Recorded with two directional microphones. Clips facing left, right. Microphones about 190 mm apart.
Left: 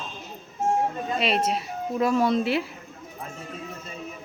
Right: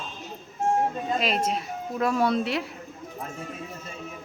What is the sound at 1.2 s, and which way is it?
Speech, centre (ahead or behind).